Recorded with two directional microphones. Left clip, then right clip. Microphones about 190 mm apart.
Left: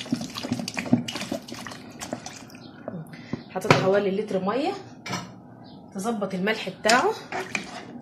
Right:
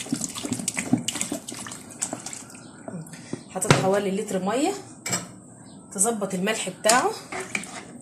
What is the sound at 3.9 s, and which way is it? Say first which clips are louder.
Speech: left 1 dB; 5° left (ahead or behind).